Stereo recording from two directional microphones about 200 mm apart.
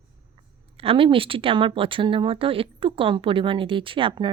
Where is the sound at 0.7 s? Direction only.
25° right (ahead or behind).